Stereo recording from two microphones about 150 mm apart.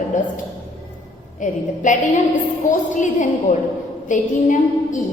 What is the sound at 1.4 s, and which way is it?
Speech, 55° left (ahead or behind).